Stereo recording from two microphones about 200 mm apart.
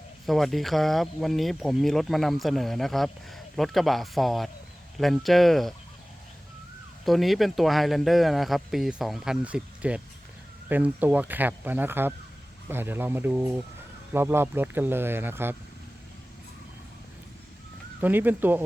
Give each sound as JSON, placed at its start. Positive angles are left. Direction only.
{"t": 0.3, "sound": "speech", "side_deg": 0}
{"t": 7.0, "sound": "speech", "side_deg": 0}
{"t": 18.0, "sound": "speech", "side_deg": -10}